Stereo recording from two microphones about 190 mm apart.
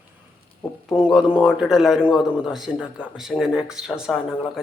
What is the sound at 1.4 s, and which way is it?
Speech, 5° right (ahead or behind).